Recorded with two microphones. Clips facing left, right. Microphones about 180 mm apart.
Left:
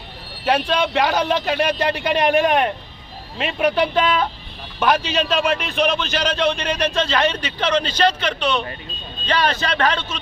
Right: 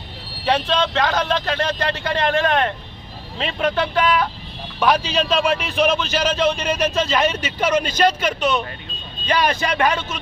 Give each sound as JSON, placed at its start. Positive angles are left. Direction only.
{"t": 0.4, "sound": "speech", "side_deg": 10}
{"t": 4.8, "sound": "a man's voice", "side_deg": 0}